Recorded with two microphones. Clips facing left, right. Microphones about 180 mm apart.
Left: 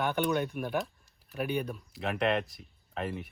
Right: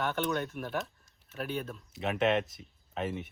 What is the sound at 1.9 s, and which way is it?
Speech, centre (ahead or behind).